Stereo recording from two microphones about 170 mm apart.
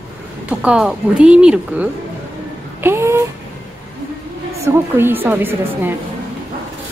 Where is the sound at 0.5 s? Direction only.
5° right (ahead or behind).